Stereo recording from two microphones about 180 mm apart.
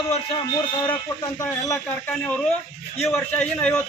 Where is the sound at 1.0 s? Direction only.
20° left (ahead or behind).